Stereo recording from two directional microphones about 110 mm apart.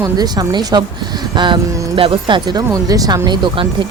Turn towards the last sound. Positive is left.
turn(degrees=-50)  # may be behind; listen again after turning